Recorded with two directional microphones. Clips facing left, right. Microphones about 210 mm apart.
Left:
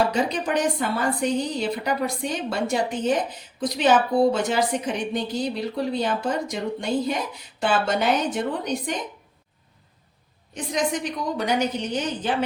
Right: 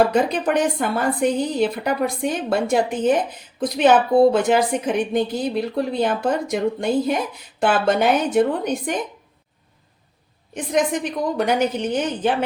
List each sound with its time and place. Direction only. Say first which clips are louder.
0.0 s a woman's voice: right 5 dB; 55° right (ahead or behind)
10.5 s a woman's voice: right 5 dB; 55° right (ahead or behind)